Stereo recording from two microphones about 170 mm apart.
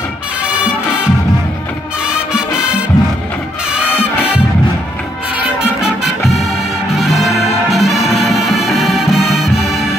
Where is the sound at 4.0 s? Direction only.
35° left (ahead or behind).